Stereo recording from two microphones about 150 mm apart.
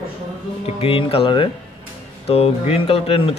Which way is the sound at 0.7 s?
40° left (ahead or behind).